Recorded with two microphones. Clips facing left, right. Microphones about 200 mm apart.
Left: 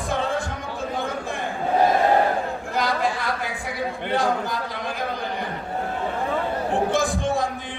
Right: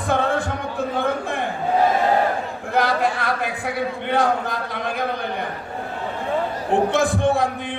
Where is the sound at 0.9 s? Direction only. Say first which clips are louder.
Right 5 dB; 60° right (ahead or behind).